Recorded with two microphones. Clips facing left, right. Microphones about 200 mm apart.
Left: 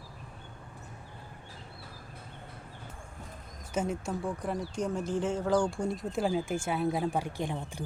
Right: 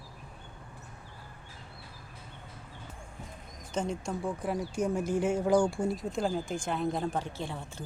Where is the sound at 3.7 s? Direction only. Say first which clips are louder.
Left 1 dB; 5° left (ahead or behind).